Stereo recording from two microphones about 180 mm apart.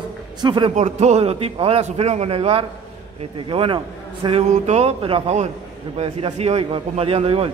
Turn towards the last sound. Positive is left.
turn(degrees=-35)  # may be behind; listen again after turning